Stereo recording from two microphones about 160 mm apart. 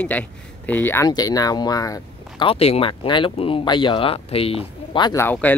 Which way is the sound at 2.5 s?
40° left (ahead or behind).